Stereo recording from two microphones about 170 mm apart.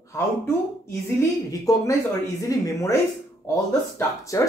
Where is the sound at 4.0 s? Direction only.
20° left (ahead or behind).